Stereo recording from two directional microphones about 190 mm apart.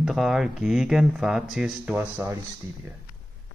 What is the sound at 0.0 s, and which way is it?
Speech, centre (ahead or behind).